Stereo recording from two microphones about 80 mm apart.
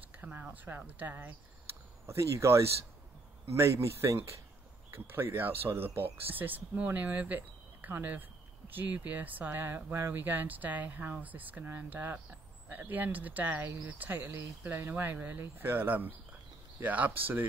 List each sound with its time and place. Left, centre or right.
0.2 s speech: centre
2.0 s speech: right